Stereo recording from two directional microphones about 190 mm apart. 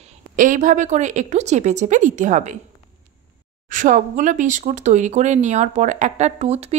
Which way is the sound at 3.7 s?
45° right (ahead or behind).